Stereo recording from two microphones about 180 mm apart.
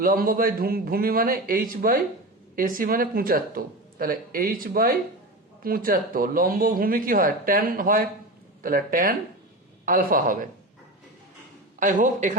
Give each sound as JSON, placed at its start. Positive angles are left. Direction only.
{"t": 0.0, "sound": "speech", "side_deg": -50}
{"t": 11.8, "sound": "speech", "side_deg": -45}